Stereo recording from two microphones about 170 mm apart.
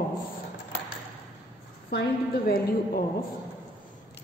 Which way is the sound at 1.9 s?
65° left (ahead or behind).